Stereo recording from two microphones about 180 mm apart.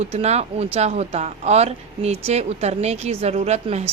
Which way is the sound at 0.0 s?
35° right (ahead or behind).